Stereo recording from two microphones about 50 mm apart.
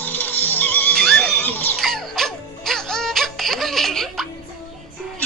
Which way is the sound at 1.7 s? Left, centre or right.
Centre.